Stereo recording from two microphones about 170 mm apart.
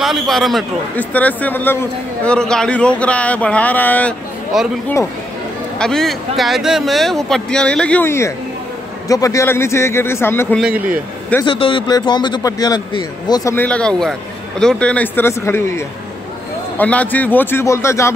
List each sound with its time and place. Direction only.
0.0 s a man's voice: centre (ahead or behind)
4.5 s speech: 5° right (ahead or behind)
5.8 s a man's voice: 5° left (ahead or behind)
11.4 s a man's voice: 30° left (ahead or behind); by 18.1 s 15° left (ahead or behind)